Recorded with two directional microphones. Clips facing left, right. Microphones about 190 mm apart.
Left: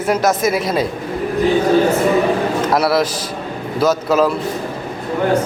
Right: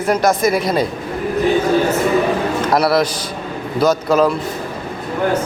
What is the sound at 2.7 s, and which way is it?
Speech, 5° left (ahead or behind).